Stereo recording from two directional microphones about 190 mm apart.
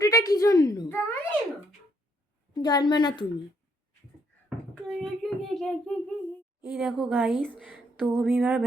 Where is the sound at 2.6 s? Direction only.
20° left (ahead or behind).